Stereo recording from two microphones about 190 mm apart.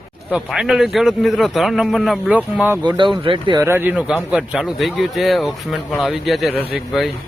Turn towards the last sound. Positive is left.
turn(degrees=0)  # may be behind; listen again after turning